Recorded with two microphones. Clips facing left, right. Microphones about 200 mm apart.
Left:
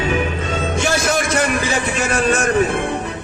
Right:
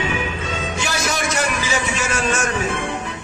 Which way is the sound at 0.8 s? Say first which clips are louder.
Left 5 dB; 50° left (ahead or behind).